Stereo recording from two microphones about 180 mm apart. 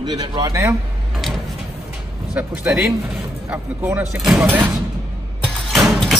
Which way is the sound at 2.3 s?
10° right (ahead or behind).